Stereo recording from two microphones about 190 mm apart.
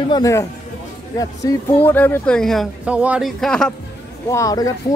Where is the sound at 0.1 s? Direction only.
15° left (ahead or behind).